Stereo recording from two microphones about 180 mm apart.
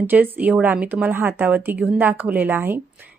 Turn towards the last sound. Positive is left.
turn(degrees=-10)  # may be behind; listen again after turning